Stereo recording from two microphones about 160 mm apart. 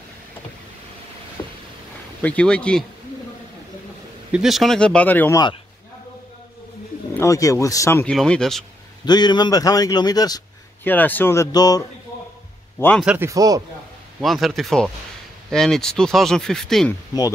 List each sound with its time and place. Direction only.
1.4 s a sound: 25° left (ahead or behind)
2.2 s speech: 5° left (ahead or behind)
4.3 s speech: centre (ahead or behind)
7.2 s a man's voice: 20° left (ahead or behind)
8.0 s speech: 5° left (ahead or behind)
9.0 s a man's voice: 25° left (ahead or behind)
10.8 s speech: 10° left (ahead or behind)
12.7 s speech: 5° left (ahead or behind)
13.0 s speech: 5° right (ahead or behind)
13.3 s speech: 20° right (ahead or behind)
14.2 s speech: centre (ahead or behind)